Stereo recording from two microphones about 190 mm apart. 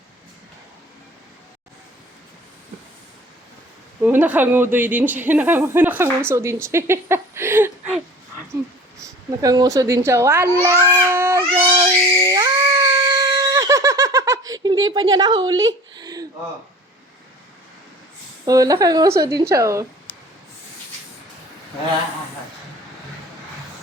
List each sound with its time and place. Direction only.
4.0 s speech: 10° right (ahead or behind)
9.0 s babbling: 20° right (ahead or behind)
15.1 s a woman's voice: 20° right (ahead or behind)
18.4 s speech: 20° right (ahead or behind)